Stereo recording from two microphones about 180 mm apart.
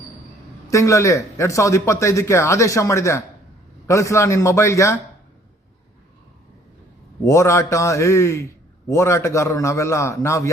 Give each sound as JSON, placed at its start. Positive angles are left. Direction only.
{"t": 0.7, "sound": "a man's voice", "side_deg": 15}
{"t": 7.3, "sound": "a man's voice", "side_deg": 15}